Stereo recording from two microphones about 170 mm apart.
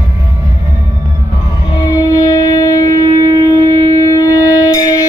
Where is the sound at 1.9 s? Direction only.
20° left (ahead or behind).